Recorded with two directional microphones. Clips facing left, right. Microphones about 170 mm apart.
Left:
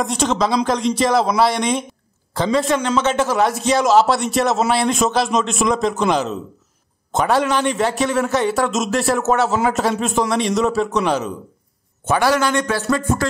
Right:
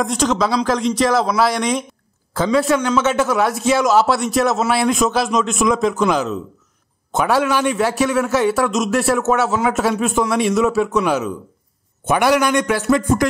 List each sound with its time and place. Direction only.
0.0 s a man's voice: centre (ahead or behind)
12.1 s a man's voice: 15° right (ahead or behind)